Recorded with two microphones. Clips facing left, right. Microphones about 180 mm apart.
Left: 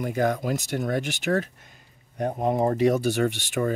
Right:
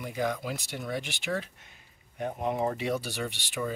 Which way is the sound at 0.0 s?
50° left (ahead or behind).